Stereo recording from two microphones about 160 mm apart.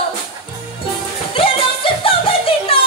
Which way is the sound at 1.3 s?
35° left (ahead or behind).